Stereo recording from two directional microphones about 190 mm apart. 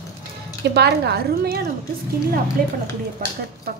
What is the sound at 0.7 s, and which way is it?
Speech, 60° right (ahead or behind).